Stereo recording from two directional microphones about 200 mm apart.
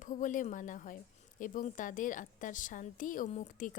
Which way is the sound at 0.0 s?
40° left (ahead or behind).